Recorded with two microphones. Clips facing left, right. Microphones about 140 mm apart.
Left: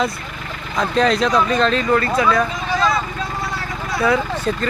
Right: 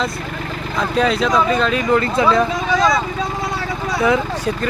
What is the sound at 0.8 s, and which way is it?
Speech, 5° right (ahead or behind).